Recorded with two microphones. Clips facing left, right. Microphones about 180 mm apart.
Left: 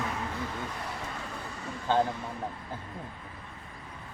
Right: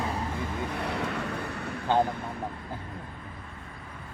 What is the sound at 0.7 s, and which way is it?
Vehicle, 65° right (ahead or behind).